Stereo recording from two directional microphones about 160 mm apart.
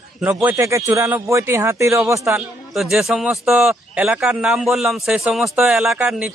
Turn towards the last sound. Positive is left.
turn(degrees=-5)  # may be behind; listen again after turning